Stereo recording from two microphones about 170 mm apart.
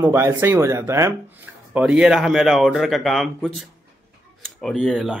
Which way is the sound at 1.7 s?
5° right (ahead or behind).